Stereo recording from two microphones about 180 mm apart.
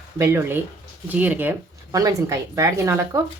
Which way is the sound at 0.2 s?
15° right (ahead or behind).